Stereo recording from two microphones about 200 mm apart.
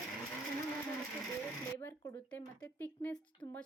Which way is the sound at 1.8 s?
10° left (ahead or behind).